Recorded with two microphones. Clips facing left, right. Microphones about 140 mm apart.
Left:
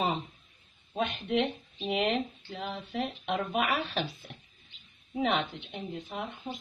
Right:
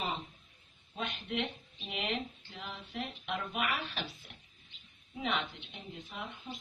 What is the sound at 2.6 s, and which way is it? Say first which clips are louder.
Speech: left 7 dB; 70° left (ahead or behind).